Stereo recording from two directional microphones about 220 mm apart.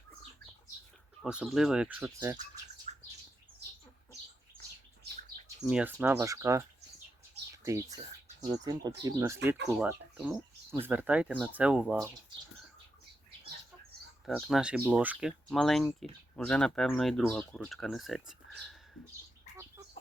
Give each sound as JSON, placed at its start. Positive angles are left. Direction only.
{"t": 1.2, "sound": "speech", "side_deg": 0}
{"t": 2.1, "sound": "speech", "side_deg": -15}
{"t": 2.9, "sound": "bird", "side_deg": -30}
{"t": 5.6, "sound": "speech", "side_deg": -5}
{"t": 14.3, "sound": "speech", "side_deg": 0}